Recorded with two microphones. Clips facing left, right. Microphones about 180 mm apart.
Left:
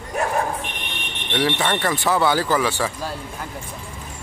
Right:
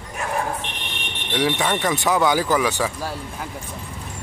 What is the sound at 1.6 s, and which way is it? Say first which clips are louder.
A man's voice: even; 5° right (ahead or behind).